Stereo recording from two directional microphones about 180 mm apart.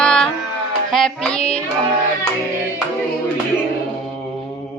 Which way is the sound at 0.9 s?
5° left (ahead or behind).